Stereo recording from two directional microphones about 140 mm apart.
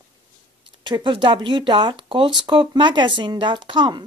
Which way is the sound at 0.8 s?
35° right (ahead or behind).